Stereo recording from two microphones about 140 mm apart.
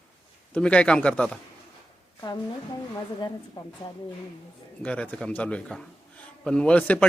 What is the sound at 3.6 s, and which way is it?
Speech, 35° left (ahead or behind).